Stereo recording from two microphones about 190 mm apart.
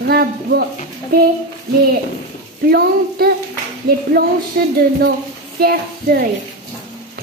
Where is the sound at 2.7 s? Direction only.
55° right (ahead or behind).